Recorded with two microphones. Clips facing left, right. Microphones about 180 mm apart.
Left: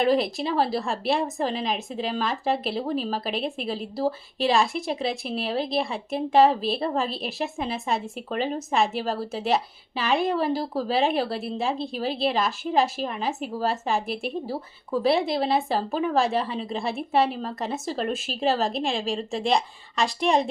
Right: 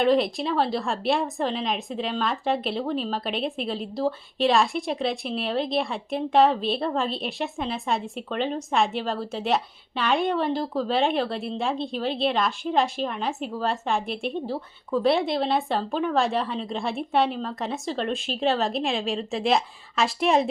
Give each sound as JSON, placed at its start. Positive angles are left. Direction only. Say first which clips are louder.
{"t": 0.0, "sound": "a woman's voice", "louder": "right 1 dB", "side_deg": 0}